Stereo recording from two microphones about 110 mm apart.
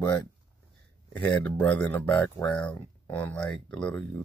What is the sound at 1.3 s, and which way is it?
Speech, 10° left (ahead or behind).